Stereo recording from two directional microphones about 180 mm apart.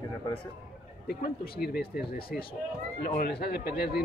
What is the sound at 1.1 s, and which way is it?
A man's voice, 60° left (ahead or behind).